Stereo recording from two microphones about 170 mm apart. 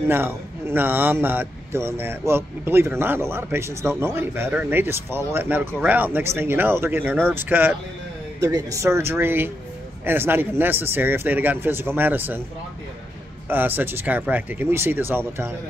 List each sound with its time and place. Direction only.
0.1 s speech: 15° right (ahead or behind)
13.5 s speech: 10° right (ahead or behind)